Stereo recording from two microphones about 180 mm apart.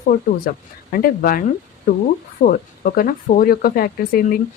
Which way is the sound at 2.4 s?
50° left (ahead or behind).